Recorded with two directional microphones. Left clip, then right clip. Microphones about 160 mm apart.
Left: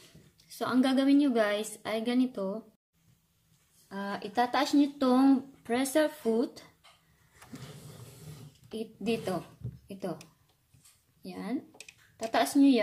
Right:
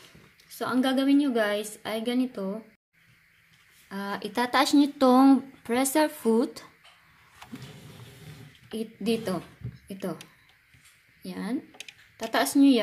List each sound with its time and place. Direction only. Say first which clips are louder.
0.5 s a woman's voice: right 2 dB; 5° right (ahead or behind)
3.9 s speech: right 2 dB; 25° right (ahead or behind)
8.6 s a woman's voice: right 4 dB; 25° right (ahead or behind)
11.2 s speech: right 3 dB; 25° right (ahead or behind)